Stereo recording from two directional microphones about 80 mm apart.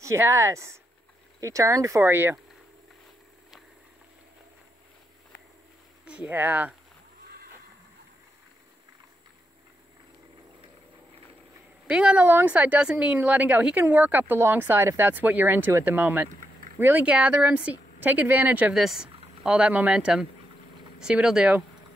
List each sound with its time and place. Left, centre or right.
0.0 s speech: right
6.0 s speech: centre
11.9 s a woman's voice: centre
18.7 s speech: centre